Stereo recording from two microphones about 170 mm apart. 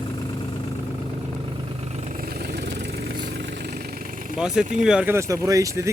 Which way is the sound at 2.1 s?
65° right (ahead or behind).